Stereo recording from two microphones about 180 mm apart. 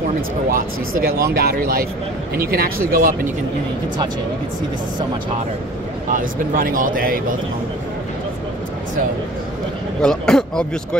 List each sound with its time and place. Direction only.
0.5 s speech: 50° right (ahead or behind)
6.0 s speech: 50° right (ahead or behind)
10.0 s speech: 5° left (ahead or behind)